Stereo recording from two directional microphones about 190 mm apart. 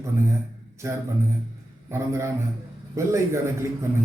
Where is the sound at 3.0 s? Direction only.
15° right (ahead or behind).